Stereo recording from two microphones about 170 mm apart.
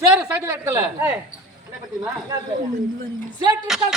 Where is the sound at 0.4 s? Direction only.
20° right (ahead or behind).